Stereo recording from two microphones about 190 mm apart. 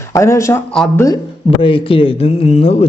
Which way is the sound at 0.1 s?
15° left (ahead or behind).